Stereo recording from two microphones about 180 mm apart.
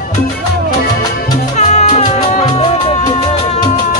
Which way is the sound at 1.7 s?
35° left (ahead or behind).